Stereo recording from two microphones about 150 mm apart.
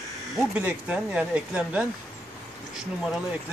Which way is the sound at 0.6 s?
10° right (ahead or behind).